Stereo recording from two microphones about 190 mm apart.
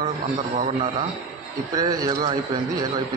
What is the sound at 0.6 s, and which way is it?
Speech, 35° right (ahead or behind).